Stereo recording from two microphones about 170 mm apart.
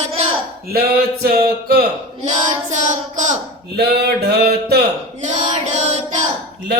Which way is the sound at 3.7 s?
70° right (ahead or behind).